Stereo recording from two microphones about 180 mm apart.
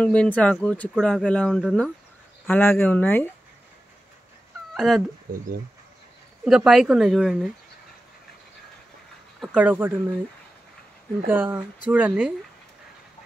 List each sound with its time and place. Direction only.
0.0 s speech: 5° left (ahead or behind)
2.4 s speech: 10° left (ahead or behind)
4.7 s speech: centre (ahead or behind)
5.3 s speech: 55° right (ahead or behind)
6.4 s speech: centre (ahead or behind)
9.4 s speech: 5° right (ahead or behind)
11.2 s speech: 10° right (ahead or behind)